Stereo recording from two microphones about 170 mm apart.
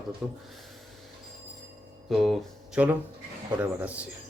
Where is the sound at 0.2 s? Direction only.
5° right (ahead or behind).